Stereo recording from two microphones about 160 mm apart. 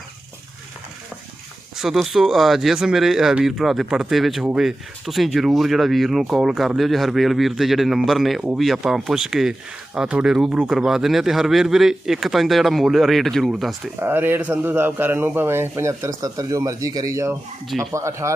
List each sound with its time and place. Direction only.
1.7 s speech: centre (ahead or behind)
14.0 s a man's voice: 15° right (ahead or behind)